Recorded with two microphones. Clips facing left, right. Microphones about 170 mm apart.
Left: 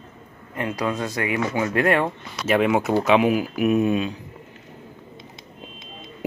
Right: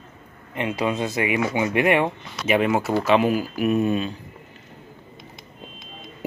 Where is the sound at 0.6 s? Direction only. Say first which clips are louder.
Right 1 dB; 20° right (ahead or behind).